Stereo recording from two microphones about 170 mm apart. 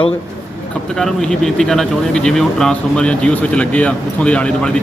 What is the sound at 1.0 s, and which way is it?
Speech, 5° left (ahead or behind).